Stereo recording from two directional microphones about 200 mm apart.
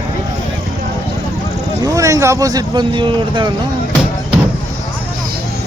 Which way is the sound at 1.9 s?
15° right (ahead or behind).